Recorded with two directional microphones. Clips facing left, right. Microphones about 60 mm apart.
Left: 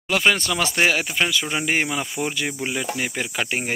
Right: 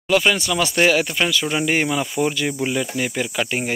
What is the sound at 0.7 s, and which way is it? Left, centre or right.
Cricket, centre.